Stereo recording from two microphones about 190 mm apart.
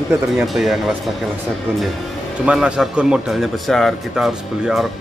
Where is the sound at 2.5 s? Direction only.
5° right (ahead or behind).